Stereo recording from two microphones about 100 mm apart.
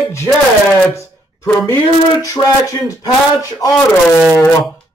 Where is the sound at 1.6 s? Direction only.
35° left (ahead or behind).